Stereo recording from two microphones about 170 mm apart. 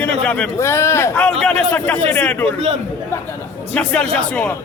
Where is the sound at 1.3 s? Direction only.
5° left (ahead or behind).